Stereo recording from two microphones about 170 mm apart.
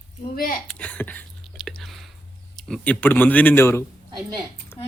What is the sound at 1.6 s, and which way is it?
Chewing, centre (ahead or behind).